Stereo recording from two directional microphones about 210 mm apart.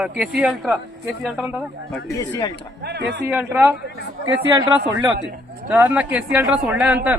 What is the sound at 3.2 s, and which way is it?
Speech, 10° right (ahead or behind).